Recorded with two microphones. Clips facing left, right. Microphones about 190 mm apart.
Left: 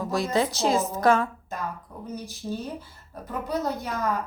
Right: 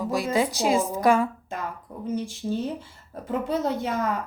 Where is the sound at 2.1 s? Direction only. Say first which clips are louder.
Right 5 dB; 25° right (ahead or behind).